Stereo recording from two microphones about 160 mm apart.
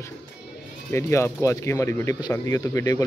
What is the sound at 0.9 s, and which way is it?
Speech, 15° left (ahead or behind).